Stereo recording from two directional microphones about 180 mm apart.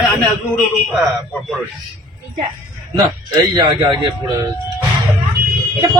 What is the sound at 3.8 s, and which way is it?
Speech, 20° right (ahead or behind).